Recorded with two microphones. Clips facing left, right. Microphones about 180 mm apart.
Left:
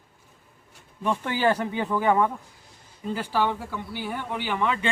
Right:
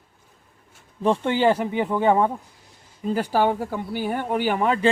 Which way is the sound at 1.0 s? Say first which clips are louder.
Right 5 dB; 30° right (ahead or behind).